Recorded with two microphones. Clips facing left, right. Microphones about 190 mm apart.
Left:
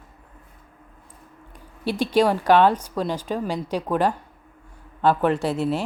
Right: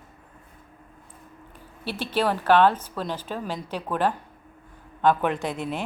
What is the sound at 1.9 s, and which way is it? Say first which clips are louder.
A woman's voice: left 6 dB; 15° left (ahead or behind).